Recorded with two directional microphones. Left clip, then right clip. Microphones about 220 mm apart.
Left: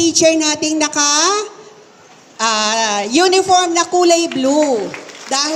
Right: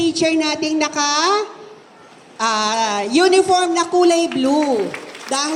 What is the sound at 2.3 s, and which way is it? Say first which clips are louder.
A woman's voice: left 2 dB; 35° left (ahead or behind).